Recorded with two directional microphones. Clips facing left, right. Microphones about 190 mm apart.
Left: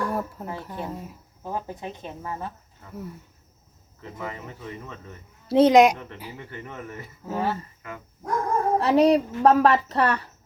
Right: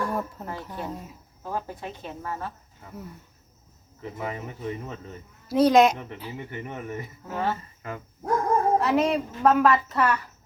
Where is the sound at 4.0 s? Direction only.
15° right (ahead or behind).